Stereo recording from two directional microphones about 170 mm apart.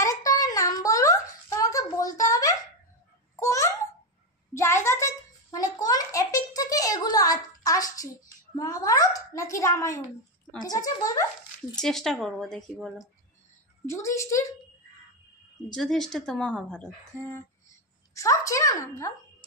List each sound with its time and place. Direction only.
0.0 s a sound: 20° left (ahead or behind)
3.3 s babbling: 15° left (ahead or behind)
4.6 s a sound: 15° left (ahead or behind)
11.8 s speech: centre (ahead or behind)
13.8 s a woman's voice: 15° left (ahead or behind)
15.7 s a woman's voice: 5° left (ahead or behind)